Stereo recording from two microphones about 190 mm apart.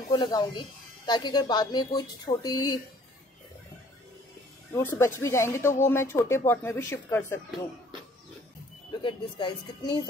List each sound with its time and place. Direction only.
0.1 s speech: 20° left (ahead or behind)
4.7 s speech: 15° left (ahead or behind)
9.0 s speech: 25° left (ahead or behind)